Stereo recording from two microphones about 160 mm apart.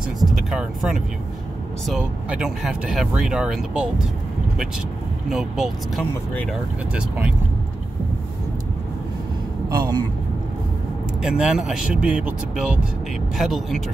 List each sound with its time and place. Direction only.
0.3 s speech: 5° right (ahead or behind)
5.3 s speech: centre (ahead or behind)
9.7 s speech: 25° right (ahead or behind)
11.2 s speech: 5° right (ahead or behind)